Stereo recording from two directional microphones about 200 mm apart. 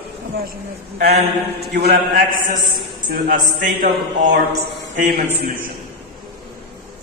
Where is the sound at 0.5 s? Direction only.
50° right (ahead or behind).